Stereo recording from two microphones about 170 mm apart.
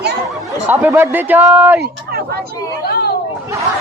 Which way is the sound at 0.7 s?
15° right (ahead or behind).